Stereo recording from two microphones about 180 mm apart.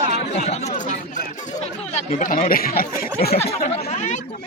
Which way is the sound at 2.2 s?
50° left (ahead or behind).